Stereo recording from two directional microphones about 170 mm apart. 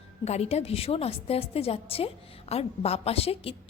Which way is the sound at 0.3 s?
40° left (ahead or behind).